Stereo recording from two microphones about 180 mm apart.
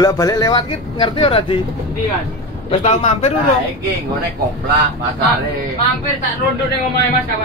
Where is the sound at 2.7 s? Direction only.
35° left (ahead or behind).